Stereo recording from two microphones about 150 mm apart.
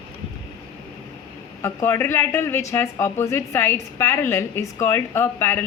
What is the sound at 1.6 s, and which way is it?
A woman's voice, 15° left (ahead or behind).